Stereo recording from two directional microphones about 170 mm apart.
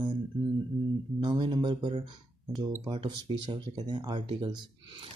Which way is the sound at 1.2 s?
25° right (ahead or behind).